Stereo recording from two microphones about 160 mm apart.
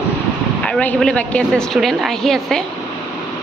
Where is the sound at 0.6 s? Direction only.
5° left (ahead or behind).